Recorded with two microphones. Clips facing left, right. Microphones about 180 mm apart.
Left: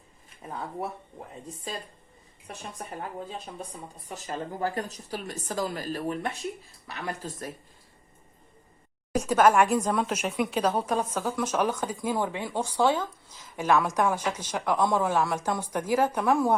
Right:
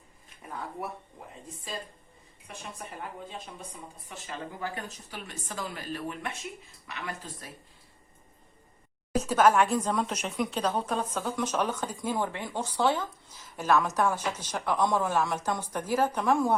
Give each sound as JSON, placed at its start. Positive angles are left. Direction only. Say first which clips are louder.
{"t": 4.1, "sound": "speech", "louder": "left 5 dB", "side_deg": 40}
{"t": 9.2, "sound": "a woman's voice", "louder": "left 2 dB", "side_deg": 10}